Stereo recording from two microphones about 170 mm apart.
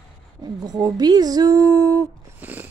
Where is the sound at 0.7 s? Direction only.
20° right (ahead or behind).